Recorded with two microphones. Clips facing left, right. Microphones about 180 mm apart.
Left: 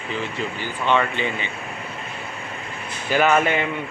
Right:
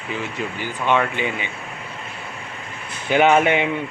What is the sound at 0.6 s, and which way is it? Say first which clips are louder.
Speech: right 1 dB; 10° right (ahead or behind).